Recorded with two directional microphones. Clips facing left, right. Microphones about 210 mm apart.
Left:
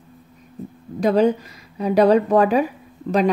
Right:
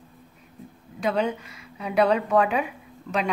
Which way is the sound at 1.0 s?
35° left (ahead or behind).